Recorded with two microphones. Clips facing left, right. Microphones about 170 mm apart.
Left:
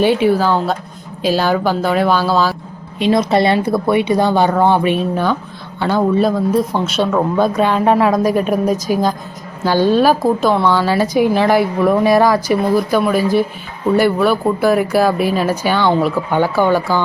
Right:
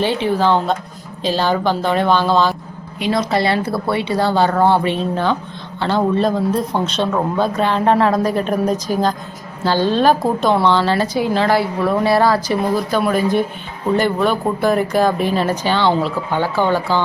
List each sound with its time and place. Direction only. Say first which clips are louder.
0.0 s speech: left 4 dB; 10° left (ahead or behind)
3.0 s speech: left 4 dB; 20° left (ahead or behind)